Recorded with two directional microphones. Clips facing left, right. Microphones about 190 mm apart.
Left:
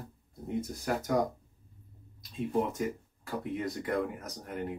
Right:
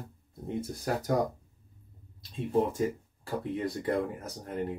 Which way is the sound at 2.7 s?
30° right (ahead or behind).